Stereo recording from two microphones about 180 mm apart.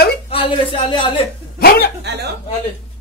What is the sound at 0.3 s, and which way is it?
Speech, 30° left (ahead or behind).